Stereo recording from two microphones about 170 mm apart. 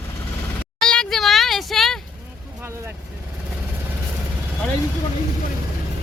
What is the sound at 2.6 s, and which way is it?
Vehicle, 15° right (ahead or behind).